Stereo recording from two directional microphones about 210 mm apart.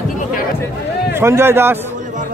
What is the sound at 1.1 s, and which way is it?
Speech, 10° right (ahead or behind).